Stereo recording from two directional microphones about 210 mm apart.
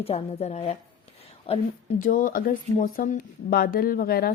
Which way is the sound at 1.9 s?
40° left (ahead or behind).